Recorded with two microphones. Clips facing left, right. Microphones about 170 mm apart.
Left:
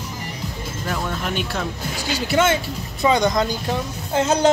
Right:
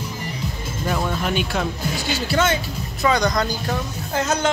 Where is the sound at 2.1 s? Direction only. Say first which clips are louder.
Left 3 dB; 20° left (ahead or behind).